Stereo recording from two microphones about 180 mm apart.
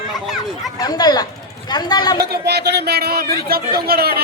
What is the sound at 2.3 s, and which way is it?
Speech, 65° right (ahead or behind).